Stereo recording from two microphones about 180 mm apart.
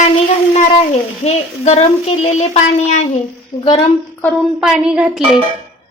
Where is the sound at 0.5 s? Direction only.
35° left (ahead or behind).